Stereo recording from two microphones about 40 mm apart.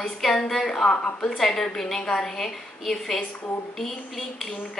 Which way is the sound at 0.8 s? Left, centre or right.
Left.